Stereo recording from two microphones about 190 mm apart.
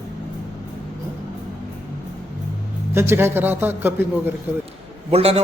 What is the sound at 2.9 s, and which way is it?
Speech, 10° right (ahead or behind).